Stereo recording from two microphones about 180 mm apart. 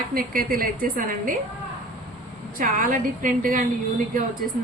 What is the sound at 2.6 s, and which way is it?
A woman's voice, 50° right (ahead or behind).